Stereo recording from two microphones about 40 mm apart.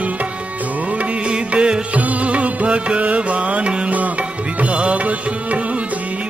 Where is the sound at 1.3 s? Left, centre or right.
Right.